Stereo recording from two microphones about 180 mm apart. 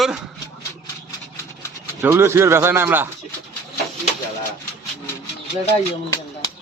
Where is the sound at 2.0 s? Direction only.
15° right (ahead or behind).